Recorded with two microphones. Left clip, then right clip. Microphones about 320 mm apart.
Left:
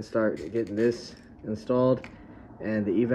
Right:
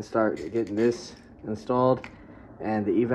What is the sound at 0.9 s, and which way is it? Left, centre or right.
Speech, right.